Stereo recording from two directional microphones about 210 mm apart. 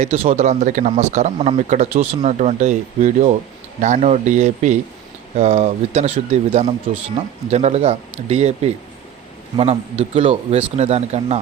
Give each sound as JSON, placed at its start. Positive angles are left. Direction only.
{"t": 0.0, "sound": "speech", "side_deg": -30}